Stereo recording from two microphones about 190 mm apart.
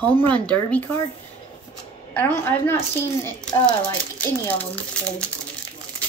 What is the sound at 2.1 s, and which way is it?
A woman's voice, 10° left (ahead or behind).